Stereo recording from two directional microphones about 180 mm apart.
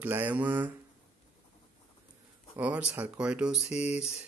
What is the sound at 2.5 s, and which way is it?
Speech, 5° right (ahead or behind).